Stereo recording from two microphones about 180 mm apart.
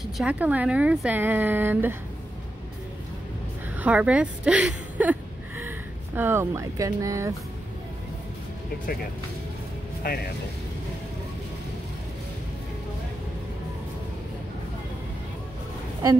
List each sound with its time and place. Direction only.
0.2 s speech: 10° right (ahead or behind)
3.7 s a woman's voice: 5° right (ahead or behind)
6.1 s speech: 15° right (ahead or behind)
10.0 s speech: 50° left (ahead or behind)